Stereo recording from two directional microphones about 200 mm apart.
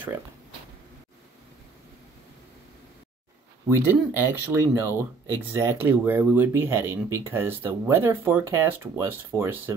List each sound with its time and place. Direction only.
3.6 s speech: 10° right (ahead or behind)